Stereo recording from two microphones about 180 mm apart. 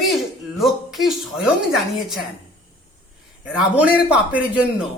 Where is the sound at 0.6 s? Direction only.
Centre (ahead or behind).